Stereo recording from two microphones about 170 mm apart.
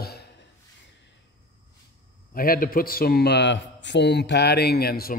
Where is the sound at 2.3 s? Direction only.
55° left (ahead or behind).